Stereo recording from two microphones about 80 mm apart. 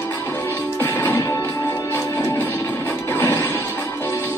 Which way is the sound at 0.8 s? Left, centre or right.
Left.